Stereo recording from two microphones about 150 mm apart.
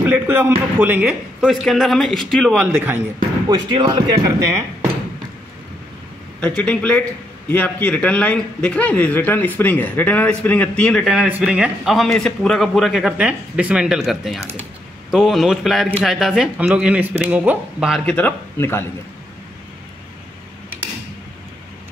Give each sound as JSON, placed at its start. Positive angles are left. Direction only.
{"t": 0.0, "sound": "a man's voice", "side_deg": -10}
{"t": 3.4, "sound": "speech", "side_deg": -30}
{"t": 6.4, "sound": "a man's voice", "side_deg": 10}
{"t": 11.2, "sound": "a man's voice", "side_deg": -10}
{"t": 18.0, "sound": "a man's voice", "side_deg": 10}